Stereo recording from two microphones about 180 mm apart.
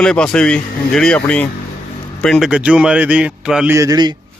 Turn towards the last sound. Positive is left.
turn(degrees=-25)  # may be behind; listen again after turning